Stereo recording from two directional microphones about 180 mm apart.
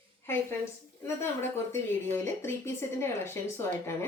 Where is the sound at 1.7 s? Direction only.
15° left (ahead or behind).